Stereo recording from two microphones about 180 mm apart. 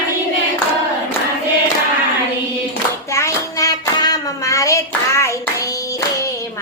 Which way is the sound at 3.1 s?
15° left (ahead or behind).